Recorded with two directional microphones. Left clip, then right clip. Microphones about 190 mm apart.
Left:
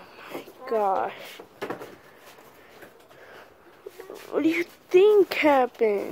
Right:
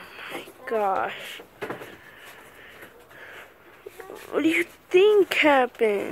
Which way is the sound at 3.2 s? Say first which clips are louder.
Right 5 dB; 5° left (ahead or behind).